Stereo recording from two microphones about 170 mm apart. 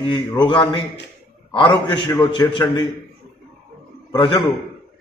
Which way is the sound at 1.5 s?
30° left (ahead or behind).